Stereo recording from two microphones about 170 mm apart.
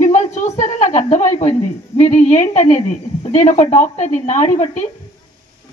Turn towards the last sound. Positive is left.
turn(degrees=45)  # may be behind; listen again after turning